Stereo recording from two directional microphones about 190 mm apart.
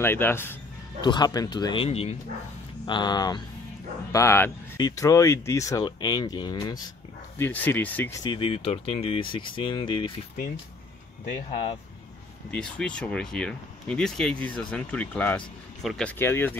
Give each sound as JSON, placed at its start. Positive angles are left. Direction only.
{"t": 0.0, "sound": "speech", "side_deg": 10}
{"t": 1.0, "sound": "speech", "side_deg": 20}
{"t": 2.8, "sound": "speech", "side_deg": 20}
{"t": 7.3, "sound": "speech", "side_deg": 10}
{"t": 8.2, "sound": "speech", "side_deg": 25}
{"t": 12.4, "sound": "speech", "side_deg": 5}